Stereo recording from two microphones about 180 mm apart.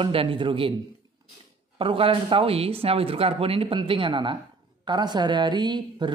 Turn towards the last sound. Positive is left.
turn(degrees=-25)  # may be behind; listen again after turning